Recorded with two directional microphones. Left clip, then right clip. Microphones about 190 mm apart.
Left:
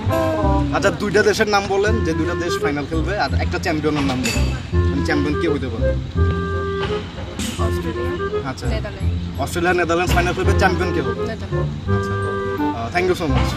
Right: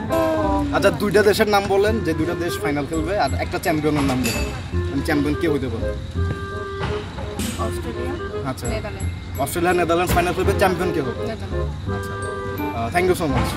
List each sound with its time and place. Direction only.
0.1 s music: 5° left (ahead or behind)
0.7 s speech: 10° right (ahead or behind)
9.4 s speech: 15° right (ahead or behind)
12.9 s speech: 10° right (ahead or behind)